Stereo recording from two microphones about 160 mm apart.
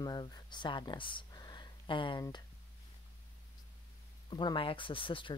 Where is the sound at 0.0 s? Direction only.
25° left (ahead or behind).